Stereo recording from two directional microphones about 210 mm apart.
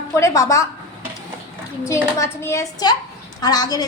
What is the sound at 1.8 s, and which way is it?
A woman's voice, 15° left (ahead or behind).